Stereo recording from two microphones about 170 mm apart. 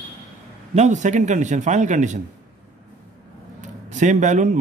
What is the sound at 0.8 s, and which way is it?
Speech, 45° right (ahead or behind).